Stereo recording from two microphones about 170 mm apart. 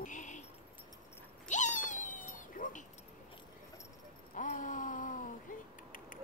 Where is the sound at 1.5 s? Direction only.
45° left (ahead or behind).